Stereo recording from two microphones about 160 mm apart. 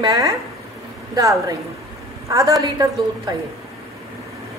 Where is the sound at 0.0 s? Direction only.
20° right (ahead or behind).